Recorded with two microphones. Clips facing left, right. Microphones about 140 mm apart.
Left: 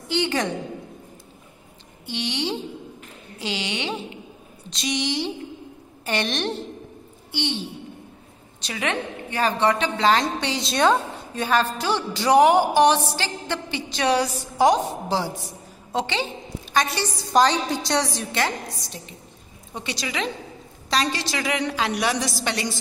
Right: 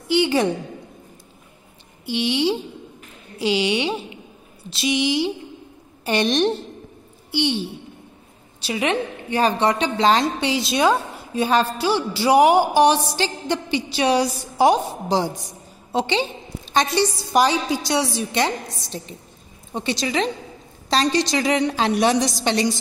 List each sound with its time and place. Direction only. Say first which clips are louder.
0.1 s a woman's voice: right 5 dB; 10° right (ahead or behind)
2.0 s a woman's voice: right 7 dB; 10° right (ahead or behind)
8.6 s a woman's voice: right 5 dB; 15° right (ahead or behind)
18.0 s a woman's voice: right 4 dB; 15° right (ahead or behind)
21.1 s a woman's voice: right 7 dB; 20° right (ahead or behind)